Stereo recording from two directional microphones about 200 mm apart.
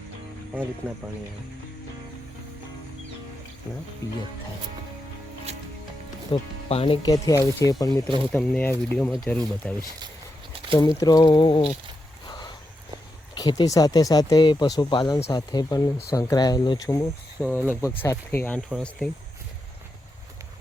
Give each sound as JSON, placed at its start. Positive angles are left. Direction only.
{"t": 0.8, "sound": "speech", "side_deg": -10}
{"t": 4.0, "sound": "speech", "side_deg": 15}
{"t": 6.3, "sound": "speech", "side_deg": 30}
{"t": 8.3, "sound": "speech", "side_deg": 5}
{"t": 10.8, "sound": "speech", "side_deg": 15}
{"t": 13.3, "sound": "speech", "side_deg": 20}